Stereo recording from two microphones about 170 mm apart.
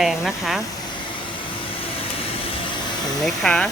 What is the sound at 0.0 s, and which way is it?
Speech, centre (ahead or behind).